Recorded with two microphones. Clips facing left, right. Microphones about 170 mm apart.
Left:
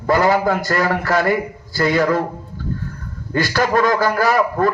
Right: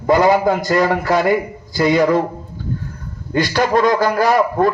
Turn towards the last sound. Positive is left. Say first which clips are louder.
# right 2 dB
turn(degrees=-15)  # may be behind; listen again after turning